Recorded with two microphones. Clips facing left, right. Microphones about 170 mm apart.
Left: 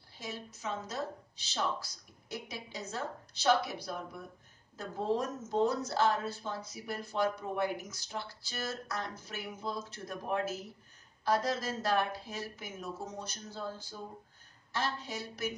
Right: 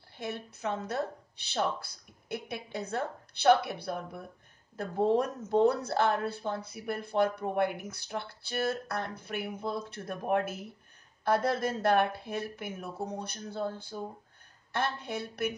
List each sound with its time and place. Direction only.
0.2 s a woman's voice: 60° right (ahead or behind)